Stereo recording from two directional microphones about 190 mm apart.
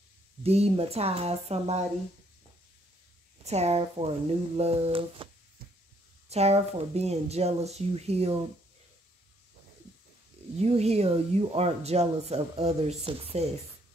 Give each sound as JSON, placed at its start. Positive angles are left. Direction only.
{"t": 0.4, "sound": "speech", "side_deg": -30}
{"t": 3.4, "sound": "speech", "side_deg": -35}
{"t": 10.6, "sound": "speech", "side_deg": -35}